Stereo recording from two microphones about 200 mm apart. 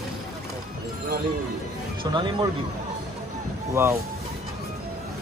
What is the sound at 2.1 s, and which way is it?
Speech, 20° right (ahead or behind).